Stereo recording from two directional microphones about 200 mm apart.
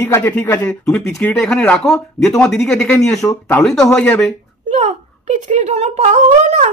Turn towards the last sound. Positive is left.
turn(degrees=-35)  # may be behind; listen again after turning